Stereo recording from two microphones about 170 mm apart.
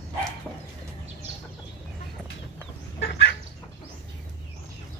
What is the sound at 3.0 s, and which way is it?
Chicken, 85° left.